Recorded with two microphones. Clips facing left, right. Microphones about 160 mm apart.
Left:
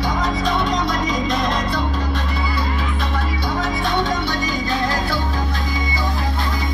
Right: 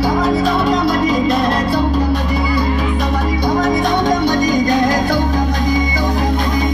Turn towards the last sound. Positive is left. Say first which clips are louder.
# right 8 dB
turn(degrees=-15)  # may be behind; listen again after turning